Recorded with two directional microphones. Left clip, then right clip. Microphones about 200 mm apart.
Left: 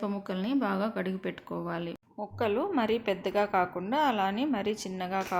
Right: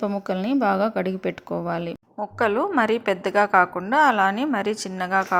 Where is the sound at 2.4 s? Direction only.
15° right (ahead or behind).